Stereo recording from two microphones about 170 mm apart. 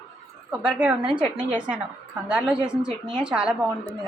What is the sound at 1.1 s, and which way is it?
Speech, 30° right (ahead or behind).